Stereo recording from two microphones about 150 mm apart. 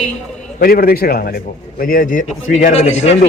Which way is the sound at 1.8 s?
70° left (ahead or behind).